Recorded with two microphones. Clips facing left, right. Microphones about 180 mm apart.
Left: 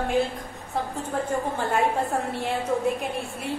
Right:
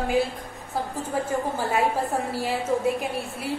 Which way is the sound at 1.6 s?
Centre (ahead or behind).